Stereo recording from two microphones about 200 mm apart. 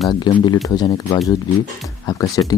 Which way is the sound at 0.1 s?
20° left (ahead or behind).